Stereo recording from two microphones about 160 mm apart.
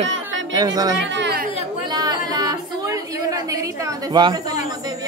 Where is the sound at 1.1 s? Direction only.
90° right.